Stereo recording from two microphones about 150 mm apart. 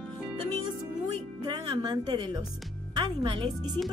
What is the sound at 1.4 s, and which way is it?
A woman's voice, 30° right (ahead or behind).